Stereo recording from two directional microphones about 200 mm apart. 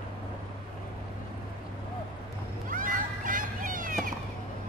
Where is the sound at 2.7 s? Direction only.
40° right (ahead or behind).